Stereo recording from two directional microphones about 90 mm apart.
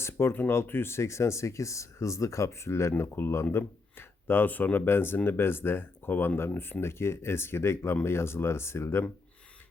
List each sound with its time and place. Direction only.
0.0 s speech: 30° left (ahead or behind)